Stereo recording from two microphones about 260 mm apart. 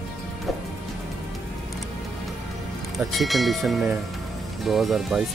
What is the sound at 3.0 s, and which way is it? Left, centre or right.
Speech, centre.